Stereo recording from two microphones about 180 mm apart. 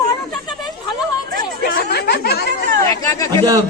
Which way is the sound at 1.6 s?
65° left (ahead or behind).